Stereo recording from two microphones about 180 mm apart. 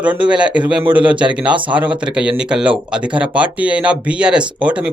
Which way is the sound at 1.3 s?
5° right (ahead or behind).